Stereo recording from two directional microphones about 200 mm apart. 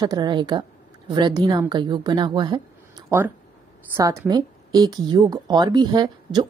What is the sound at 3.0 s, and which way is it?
Speech, 10° right (ahead or behind).